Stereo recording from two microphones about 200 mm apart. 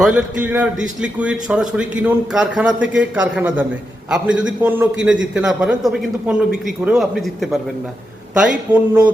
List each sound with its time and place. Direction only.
0.0 s a man's voice: 5° right (ahead or behind)
8.7 s a man's voice: 10° right (ahead or behind)